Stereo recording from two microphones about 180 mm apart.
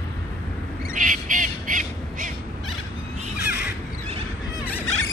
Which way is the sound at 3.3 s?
65° left (ahead or behind).